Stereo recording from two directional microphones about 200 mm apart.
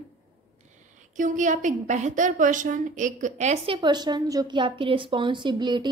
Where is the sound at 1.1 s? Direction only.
40° right (ahead or behind).